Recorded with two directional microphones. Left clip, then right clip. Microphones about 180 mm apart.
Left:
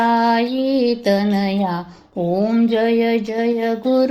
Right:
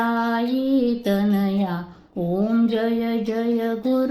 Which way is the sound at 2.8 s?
30° right (ahead or behind).